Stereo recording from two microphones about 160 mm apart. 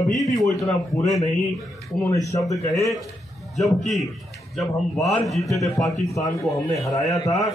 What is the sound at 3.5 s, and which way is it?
A man's voice, centre (ahead or behind).